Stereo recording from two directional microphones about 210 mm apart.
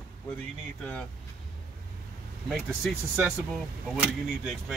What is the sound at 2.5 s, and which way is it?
Speech, centre (ahead or behind).